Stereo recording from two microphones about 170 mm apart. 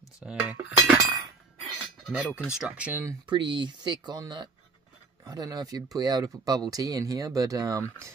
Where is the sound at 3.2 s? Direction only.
30° right (ahead or behind).